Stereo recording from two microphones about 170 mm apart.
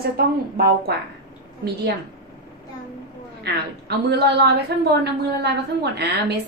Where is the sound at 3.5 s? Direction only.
75° right (ahead or behind).